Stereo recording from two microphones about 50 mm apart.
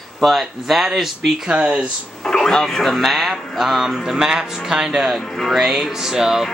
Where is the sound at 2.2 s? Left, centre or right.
Centre.